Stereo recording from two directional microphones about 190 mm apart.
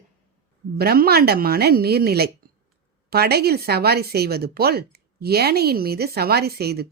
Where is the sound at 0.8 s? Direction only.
55° right (ahead or behind).